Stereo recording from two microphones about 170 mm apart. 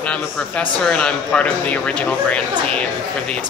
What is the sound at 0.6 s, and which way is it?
Speech, 5° left (ahead or behind).